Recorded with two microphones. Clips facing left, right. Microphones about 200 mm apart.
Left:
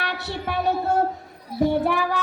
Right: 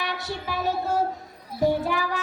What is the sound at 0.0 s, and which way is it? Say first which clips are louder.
Music: left 2 dB; 65° left (ahead or behind).